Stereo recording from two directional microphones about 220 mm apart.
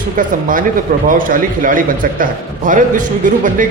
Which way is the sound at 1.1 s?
40° right (ahead or behind).